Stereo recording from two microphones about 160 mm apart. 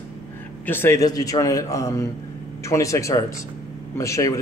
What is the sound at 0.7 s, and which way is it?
A man's voice, 15° left (ahead or behind).